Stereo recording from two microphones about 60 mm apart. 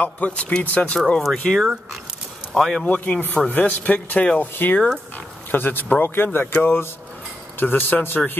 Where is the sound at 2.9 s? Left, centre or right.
Left.